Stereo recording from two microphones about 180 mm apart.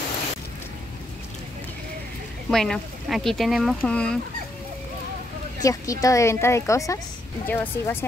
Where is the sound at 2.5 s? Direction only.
Centre (ahead or behind).